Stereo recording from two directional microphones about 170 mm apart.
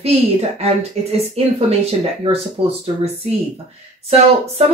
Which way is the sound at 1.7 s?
35° right (ahead or behind).